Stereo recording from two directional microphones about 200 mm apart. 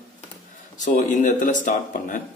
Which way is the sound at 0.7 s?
40° left (ahead or behind).